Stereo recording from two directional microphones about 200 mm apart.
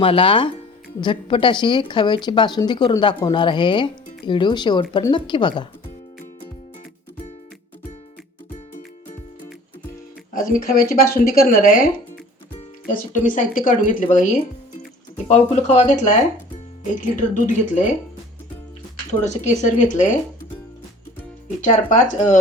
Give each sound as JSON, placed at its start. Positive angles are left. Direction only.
{"t": 0.0, "sound": "speech", "side_deg": 25}
{"t": 10.3, "sound": "speech", "side_deg": 45}
{"t": 19.2, "sound": "speech", "side_deg": 35}
{"t": 21.6, "sound": "speech", "side_deg": 40}